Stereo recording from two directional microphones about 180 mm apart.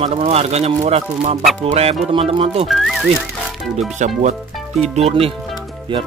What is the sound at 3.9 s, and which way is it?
Mantra, 40° right (ahead or behind).